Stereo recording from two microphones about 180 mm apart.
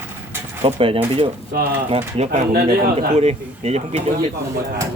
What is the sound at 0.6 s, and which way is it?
Speech, 30° right (ahead or behind).